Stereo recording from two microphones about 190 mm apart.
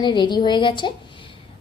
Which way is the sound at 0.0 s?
25° left (ahead or behind).